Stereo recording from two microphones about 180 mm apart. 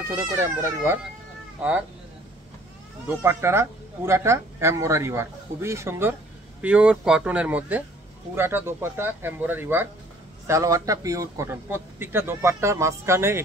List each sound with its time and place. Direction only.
0.4 s speech: 15° right (ahead or behind)
3.2 s speech: 15° right (ahead or behind)